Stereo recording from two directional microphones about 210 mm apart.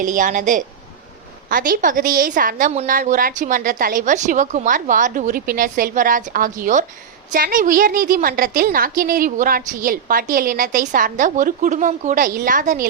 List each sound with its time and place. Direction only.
0.0 s a woman's voice: 40° right (ahead or behind)